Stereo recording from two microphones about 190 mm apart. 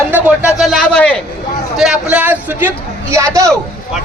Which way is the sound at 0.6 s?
Centre (ahead or behind).